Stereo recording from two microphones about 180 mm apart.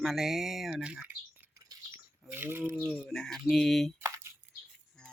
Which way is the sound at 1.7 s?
20° right (ahead or behind).